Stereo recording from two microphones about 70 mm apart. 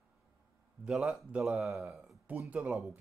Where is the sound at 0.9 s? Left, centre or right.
Centre.